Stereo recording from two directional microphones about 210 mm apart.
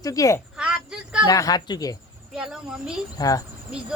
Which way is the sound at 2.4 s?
5° right (ahead or behind).